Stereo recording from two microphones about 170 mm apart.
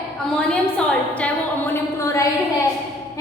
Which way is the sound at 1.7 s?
20° left (ahead or behind).